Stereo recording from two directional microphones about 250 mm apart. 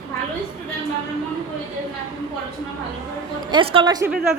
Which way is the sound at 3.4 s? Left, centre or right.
Centre.